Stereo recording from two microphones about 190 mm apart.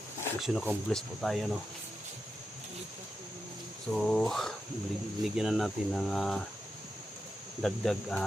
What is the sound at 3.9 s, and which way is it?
Speech, 5° left (ahead or behind).